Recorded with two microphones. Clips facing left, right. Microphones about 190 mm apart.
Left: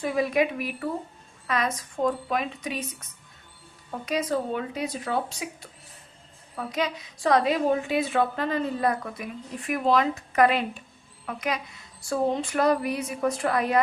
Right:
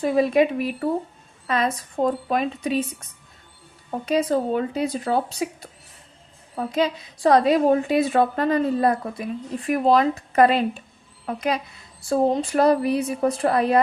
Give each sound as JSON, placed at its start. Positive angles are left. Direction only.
{"t": 0.0, "sound": "a woman's voice", "side_deg": -30}
{"t": 4.0, "sound": "a woman's voice", "side_deg": -30}